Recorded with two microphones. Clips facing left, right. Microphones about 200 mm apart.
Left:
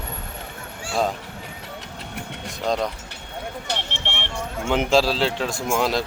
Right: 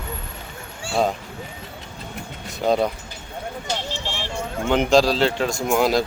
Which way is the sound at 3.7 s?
65° left (ahead or behind).